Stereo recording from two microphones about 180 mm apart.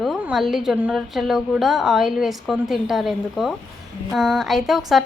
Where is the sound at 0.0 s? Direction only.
Centre (ahead or behind).